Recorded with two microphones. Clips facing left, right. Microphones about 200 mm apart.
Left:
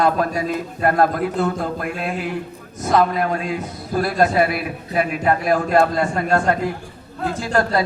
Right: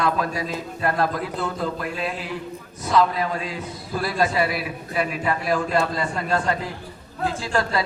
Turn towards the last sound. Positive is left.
turn(degrees=45)  # may be behind; listen again after turning